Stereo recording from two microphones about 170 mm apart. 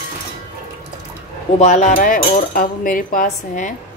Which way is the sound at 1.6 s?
45° left (ahead or behind).